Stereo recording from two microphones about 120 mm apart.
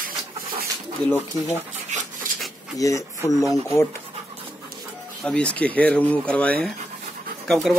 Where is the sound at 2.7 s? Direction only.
30° left (ahead or behind).